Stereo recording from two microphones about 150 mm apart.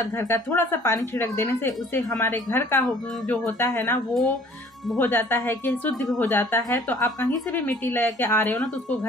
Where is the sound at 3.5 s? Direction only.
20° left (ahead or behind).